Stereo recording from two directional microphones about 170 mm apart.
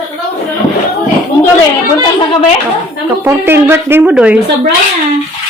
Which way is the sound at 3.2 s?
15° right (ahead or behind).